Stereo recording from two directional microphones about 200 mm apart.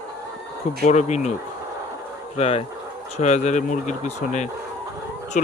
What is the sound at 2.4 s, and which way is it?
Speech, 30° left (ahead or behind).